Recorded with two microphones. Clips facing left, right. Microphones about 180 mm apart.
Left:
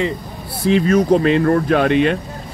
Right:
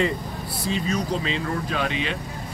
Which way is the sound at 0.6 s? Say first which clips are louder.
Left 12 dB; 65° left (ahead or behind).